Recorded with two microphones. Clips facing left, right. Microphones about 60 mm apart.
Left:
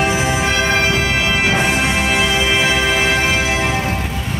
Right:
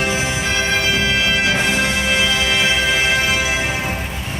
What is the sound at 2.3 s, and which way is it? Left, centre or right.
Music, left.